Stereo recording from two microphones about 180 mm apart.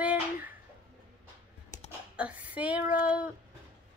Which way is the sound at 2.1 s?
10° right (ahead or behind).